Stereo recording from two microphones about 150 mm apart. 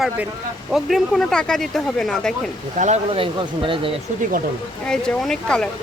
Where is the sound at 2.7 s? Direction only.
50° right (ahead or behind).